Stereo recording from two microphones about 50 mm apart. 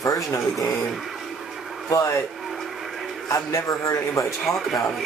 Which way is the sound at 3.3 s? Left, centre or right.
Left.